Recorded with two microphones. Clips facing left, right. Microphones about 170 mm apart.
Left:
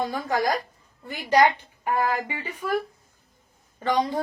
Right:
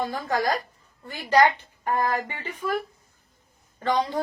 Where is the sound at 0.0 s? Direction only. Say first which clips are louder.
Left 1 dB; 15° left (ahead or behind).